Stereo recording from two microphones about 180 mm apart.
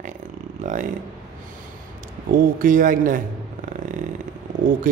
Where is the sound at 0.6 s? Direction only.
45° right (ahead or behind).